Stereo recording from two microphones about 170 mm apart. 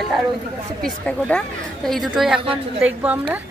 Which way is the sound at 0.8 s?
5° left (ahead or behind).